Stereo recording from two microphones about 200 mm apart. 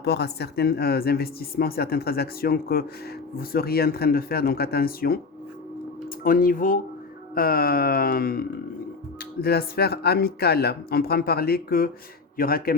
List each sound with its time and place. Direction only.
0.0 s speech: 55° left (ahead or behind)
6.2 s speech: 45° left (ahead or behind)